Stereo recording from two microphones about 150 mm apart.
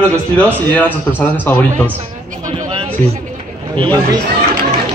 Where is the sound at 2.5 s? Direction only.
40° right (ahead or behind).